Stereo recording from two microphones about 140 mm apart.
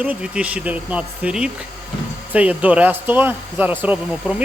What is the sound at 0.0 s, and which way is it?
Speech, 10° right (ahead or behind).